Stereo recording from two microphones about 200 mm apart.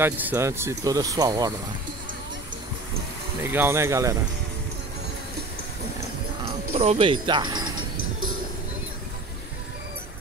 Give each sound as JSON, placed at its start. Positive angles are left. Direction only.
{"t": 0.0, "sound": "speech", "side_deg": -10}
{"t": 3.4, "sound": "speech", "side_deg": -10}
{"t": 6.7, "sound": "speech", "side_deg": -30}